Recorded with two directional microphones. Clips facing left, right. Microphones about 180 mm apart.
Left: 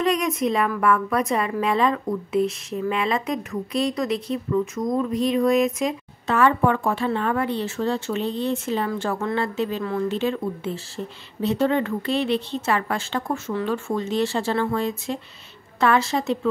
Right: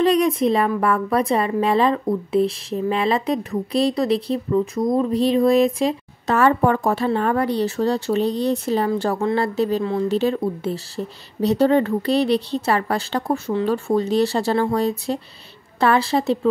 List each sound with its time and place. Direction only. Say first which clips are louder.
0.0 s a woman's voice: right 5 dB; 35° right (ahead or behind)